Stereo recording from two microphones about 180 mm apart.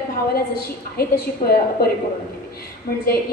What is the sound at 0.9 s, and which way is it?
Speech, 60° left (ahead or behind).